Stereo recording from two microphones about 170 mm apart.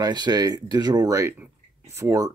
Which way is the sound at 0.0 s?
25° right (ahead or behind).